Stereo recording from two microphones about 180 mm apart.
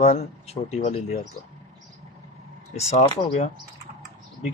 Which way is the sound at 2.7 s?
35° left (ahead or behind).